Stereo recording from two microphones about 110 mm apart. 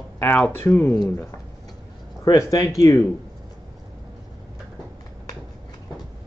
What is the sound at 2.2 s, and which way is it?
Speech, 30° left (ahead or behind).